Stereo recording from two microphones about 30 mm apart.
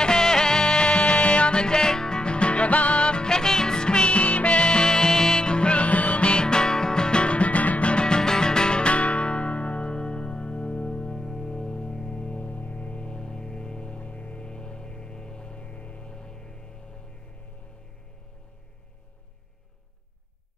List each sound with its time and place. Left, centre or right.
0.0 s music: left
0.7 s music: left
3.3 s music: left
5.9 s music: left
6.3 s music: left
7.9 s music: left
11.4 s music: left
12.4 s music: left
12.8 s music: left
14.4 s music: left
16.1 s music: left